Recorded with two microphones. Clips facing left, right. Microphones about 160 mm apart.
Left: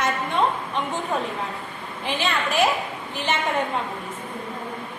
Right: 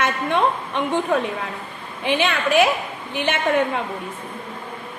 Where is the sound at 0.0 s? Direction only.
65° right (ahead or behind).